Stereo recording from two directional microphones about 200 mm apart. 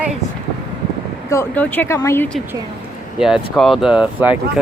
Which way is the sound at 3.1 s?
Centre (ahead or behind).